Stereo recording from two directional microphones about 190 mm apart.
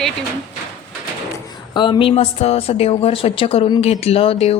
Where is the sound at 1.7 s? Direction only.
25° left (ahead or behind).